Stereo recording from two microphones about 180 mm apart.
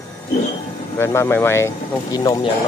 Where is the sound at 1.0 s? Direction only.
15° left (ahead or behind).